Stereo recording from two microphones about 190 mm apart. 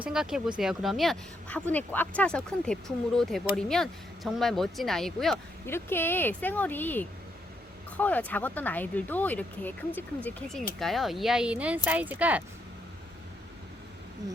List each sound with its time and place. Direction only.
0.0 s speech: 5° right (ahead or behind)
5.6 s speech: 10° left (ahead or behind); by 12.4 s 10° right (ahead or behind)